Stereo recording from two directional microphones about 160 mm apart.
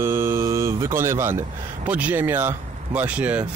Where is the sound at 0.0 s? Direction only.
15° right (ahead or behind).